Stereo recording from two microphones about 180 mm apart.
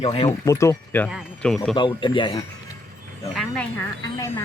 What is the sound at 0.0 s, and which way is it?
Speech, 30° left (ahead or behind).